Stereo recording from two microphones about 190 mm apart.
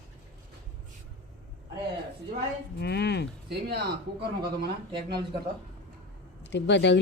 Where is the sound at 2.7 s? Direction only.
60° left (ahead or behind).